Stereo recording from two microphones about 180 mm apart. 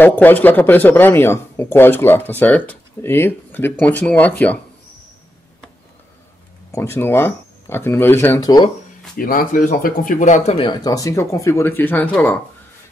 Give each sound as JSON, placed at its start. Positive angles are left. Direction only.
{"t": 0.0, "sound": "speech", "side_deg": 10}
{"t": 6.7, "sound": "speech", "side_deg": 15}
{"t": 9.1, "sound": "speech", "side_deg": 50}